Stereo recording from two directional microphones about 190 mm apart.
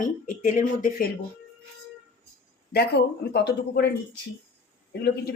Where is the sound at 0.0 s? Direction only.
45° left (ahead or behind).